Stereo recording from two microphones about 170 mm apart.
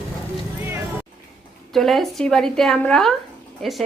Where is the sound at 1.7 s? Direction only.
Centre (ahead or behind).